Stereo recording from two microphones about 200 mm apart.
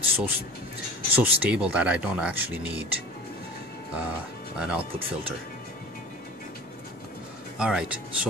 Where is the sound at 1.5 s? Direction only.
5° right (ahead or behind).